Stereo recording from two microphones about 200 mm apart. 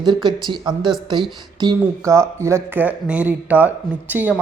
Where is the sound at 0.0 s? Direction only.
20° right (ahead or behind).